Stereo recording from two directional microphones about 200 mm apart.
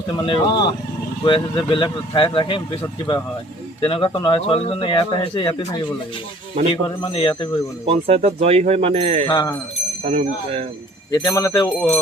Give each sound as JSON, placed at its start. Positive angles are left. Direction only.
{"t": 0.2, "sound": "a man's voice", "side_deg": 25}
{"t": 3.8, "sound": "a man's voice", "side_deg": 25}
{"t": 6.8, "sound": "a man's voice", "side_deg": 25}
{"t": 7.9, "sound": "speech", "side_deg": -30}
{"t": 9.2, "sound": "speech", "side_deg": 15}
{"t": 10.0, "sound": "speech", "side_deg": -35}
{"t": 11.1, "sound": "speech", "side_deg": 20}